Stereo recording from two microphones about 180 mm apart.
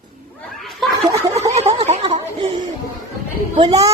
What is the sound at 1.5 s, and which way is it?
Speech, 35° right (ahead or behind).